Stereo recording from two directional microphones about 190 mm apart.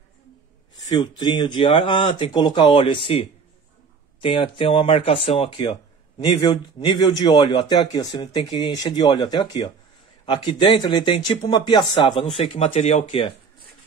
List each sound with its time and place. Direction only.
0.9 s speech: 20° left (ahead or behind)